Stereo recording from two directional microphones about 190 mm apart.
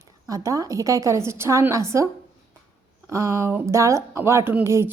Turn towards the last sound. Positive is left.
turn(degrees=-15)  # may be behind; listen again after turning